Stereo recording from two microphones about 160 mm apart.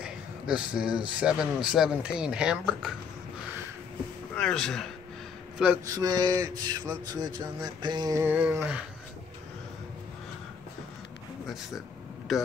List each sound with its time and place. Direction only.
0.0 s speech: 5° right (ahead or behind)
4.4 s speech: 5° left (ahead or behind)
5.9 s speech: 25° right (ahead or behind); by 8.8 s 10° right (ahead or behind)